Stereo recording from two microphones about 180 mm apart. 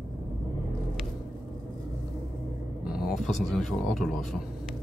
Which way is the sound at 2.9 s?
Centre (ahead or behind).